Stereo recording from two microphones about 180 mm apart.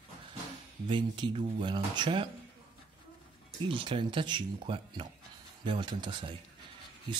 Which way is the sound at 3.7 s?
25° right (ahead or behind).